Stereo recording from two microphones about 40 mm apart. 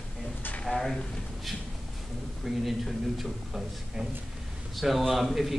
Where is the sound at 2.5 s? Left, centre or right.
Centre.